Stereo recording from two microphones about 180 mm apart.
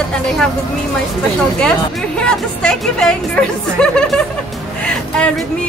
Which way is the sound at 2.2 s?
5° left (ahead or behind).